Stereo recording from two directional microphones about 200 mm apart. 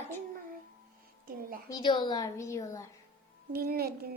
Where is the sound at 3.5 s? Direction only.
50° right (ahead or behind).